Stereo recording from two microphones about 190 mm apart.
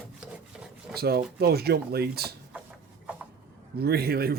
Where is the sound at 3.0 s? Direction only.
10° right (ahead or behind).